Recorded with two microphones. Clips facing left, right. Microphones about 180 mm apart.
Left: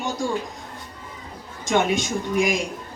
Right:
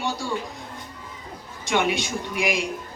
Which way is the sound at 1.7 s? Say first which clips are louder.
Left 2 dB; 45° left (ahead or behind).